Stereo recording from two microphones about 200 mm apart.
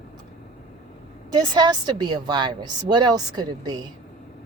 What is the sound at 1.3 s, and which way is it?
Speech, 20° right (ahead or behind).